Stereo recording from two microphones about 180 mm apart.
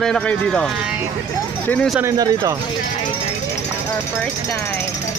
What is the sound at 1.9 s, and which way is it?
Speech, 10° right (ahead or behind).